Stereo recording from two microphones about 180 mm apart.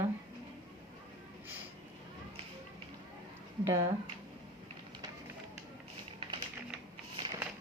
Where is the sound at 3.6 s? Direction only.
15° right (ahead or behind).